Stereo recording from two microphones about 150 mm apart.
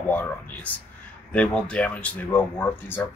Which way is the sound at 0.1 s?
10° left (ahead or behind).